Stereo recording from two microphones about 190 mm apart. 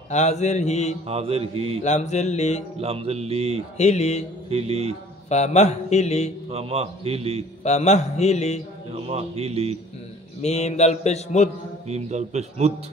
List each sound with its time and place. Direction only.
0.1 s mantra: 35° left (ahead or behind)
1.0 s mantra: 30° right (ahead or behind)
1.8 s mantra: 35° left (ahead or behind)
2.8 s a man's voice: 30° right (ahead or behind)
3.7 s mantra: 35° left (ahead or behind)
4.5 s a man's voice: 30° right (ahead or behind)
5.3 s mantra: 35° left (ahead or behind)
6.5 s a man's voice: 30° right (ahead or behind)
7.6 s mantra: 35° left (ahead or behind)
9.0 s a man's voice: 30° right (ahead or behind)
10.4 s mantra: 35° left (ahead or behind)
11.9 s a man's voice: 35° right (ahead or behind)